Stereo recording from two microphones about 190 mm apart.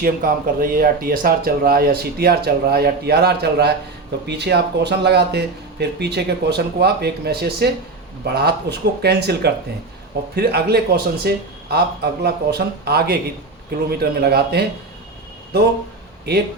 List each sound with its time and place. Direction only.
0.0 s speech: 50° right (ahead or behind)
16.3 s speech: 55° right (ahead or behind)